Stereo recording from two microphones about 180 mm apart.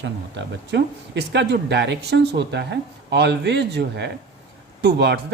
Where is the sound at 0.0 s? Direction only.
75° right (ahead or behind).